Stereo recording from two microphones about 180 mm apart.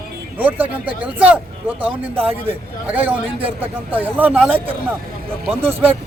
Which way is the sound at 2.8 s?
10° right (ahead or behind).